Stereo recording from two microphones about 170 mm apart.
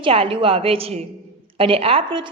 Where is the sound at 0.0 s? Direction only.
35° right (ahead or behind).